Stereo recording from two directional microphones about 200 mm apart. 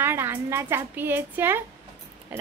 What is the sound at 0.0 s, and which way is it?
Female singing, 10° right (ahead or behind).